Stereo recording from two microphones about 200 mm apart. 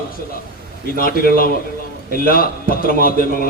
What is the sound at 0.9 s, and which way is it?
A man's voice, 45° left (ahead or behind).